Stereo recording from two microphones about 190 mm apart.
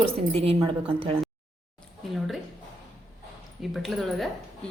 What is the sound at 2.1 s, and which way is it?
Speech, centre (ahead or behind).